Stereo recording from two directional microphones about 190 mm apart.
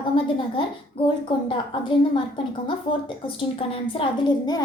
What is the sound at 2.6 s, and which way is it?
A woman's voice, 25° left (ahead or behind).